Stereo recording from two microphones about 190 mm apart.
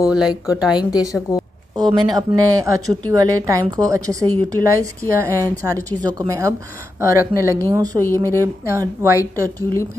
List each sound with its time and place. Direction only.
0.0 s a woman's voice: 5° right (ahead or behind)
1.8 s a woman's voice: 20° right (ahead or behind)